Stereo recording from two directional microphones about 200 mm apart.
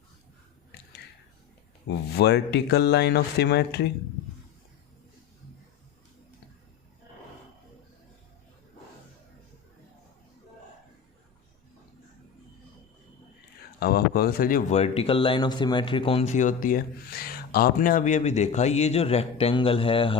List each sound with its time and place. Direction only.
0.7 s a sound: 55° left (ahead or behind)
1.9 s speech: 55° left (ahead or behind)
13.7 s speech: 50° left (ahead or behind); by 20.1 s 25° left (ahead or behind)